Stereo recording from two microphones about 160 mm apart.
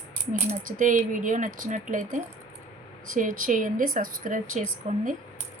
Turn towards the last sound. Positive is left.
turn(degrees=-45)  # may be behind; listen again after turning